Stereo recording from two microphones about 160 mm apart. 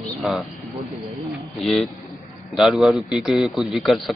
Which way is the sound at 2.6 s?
Centre (ahead or behind).